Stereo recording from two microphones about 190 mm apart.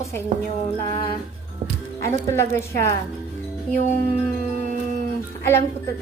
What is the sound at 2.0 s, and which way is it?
Speech, 15° left (ahead or behind).